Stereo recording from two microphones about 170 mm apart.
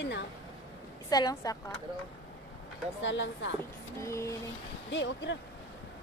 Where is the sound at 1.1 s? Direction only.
25° left (ahead or behind).